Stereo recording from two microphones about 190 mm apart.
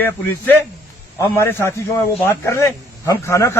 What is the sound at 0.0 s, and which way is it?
A man's voice, 10° left (ahead or behind).